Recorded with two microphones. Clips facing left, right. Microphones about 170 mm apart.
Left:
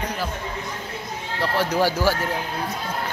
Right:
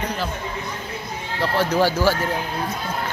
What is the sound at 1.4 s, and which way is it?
Speech, 10° left (ahead or behind).